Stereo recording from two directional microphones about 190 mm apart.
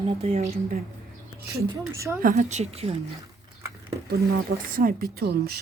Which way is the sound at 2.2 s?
40° right (ahead or behind).